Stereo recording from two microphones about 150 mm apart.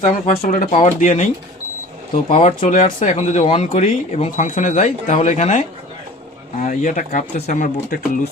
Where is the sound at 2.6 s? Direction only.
40° left (ahead or behind).